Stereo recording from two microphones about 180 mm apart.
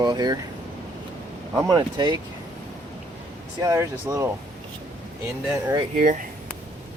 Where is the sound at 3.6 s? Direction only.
15° right (ahead or behind).